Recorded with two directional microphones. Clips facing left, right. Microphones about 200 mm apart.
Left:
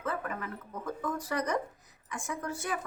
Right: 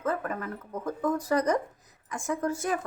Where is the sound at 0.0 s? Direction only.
45° right (ahead or behind).